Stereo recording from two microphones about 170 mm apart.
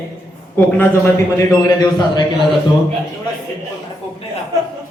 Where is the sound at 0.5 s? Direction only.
10° left (ahead or behind).